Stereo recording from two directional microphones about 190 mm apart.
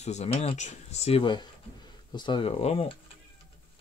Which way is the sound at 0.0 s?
35° left (ahead or behind).